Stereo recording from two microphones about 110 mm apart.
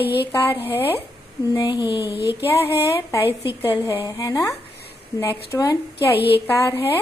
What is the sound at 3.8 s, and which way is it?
A woman's voice, 30° left (ahead or behind).